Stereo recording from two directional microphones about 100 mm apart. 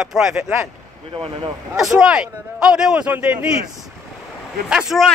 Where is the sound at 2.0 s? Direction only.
5° right (ahead or behind).